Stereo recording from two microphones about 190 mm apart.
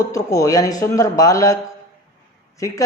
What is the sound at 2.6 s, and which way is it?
Speech, 15° left (ahead or behind).